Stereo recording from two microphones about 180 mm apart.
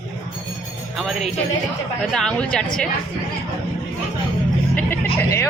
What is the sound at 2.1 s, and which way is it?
Speech, 5° left (ahead or behind).